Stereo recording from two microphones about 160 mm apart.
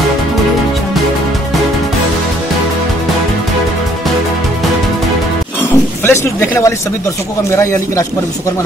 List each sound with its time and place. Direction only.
6.0 s speech: 15° left (ahead or behind)